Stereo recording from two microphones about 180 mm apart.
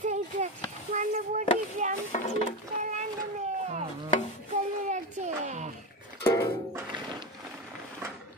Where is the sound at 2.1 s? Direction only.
40° left (ahead or behind).